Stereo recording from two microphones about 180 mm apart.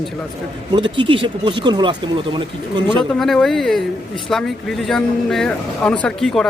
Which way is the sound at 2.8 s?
Centre (ahead or behind).